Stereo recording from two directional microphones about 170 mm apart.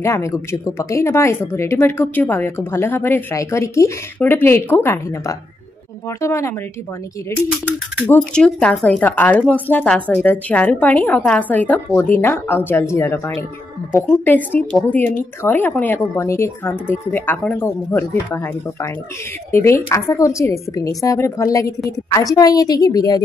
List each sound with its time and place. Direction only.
0.0 s speech: 15° left (ahead or behind)
8.1 s a woman's voice: 5° left (ahead or behind); by 23.2 s 20° left (ahead or behind)